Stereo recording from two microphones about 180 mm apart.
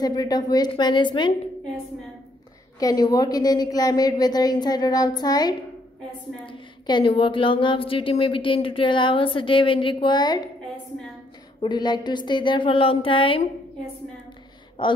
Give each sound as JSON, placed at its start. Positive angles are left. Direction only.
{"t": 0.0, "sound": "a woman's voice", "side_deg": 20}
{"t": 2.8, "sound": "a woman's voice", "side_deg": 20}
{"t": 11.6, "sound": "a woman's voice", "side_deg": 25}
{"t": 14.8, "sound": "a woman's voice", "side_deg": 25}